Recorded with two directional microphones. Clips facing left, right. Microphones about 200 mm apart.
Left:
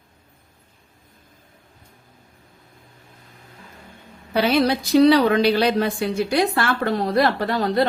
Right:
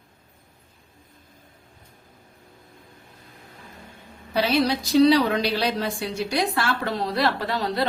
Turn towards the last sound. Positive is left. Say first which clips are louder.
# left 5 dB
turn(degrees=50)  # may be behind; listen again after turning